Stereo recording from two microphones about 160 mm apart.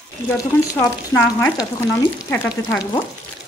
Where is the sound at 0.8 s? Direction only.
10° left (ahead or behind).